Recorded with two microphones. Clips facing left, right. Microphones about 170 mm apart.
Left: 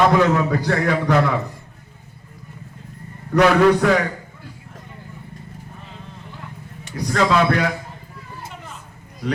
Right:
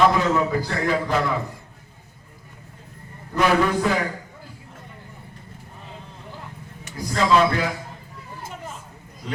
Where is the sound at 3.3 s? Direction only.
70° left (ahead or behind).